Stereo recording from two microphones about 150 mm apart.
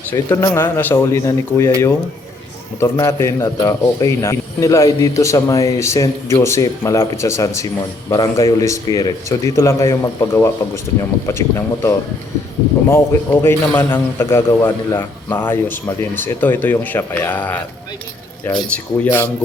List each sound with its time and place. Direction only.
0.1 s a man's voice: 25° left (ahead or behind)
2.8 s a man's voice: 20° left (ahead or behind)
18.7 s a man's voice: 15° left (ahead or behind)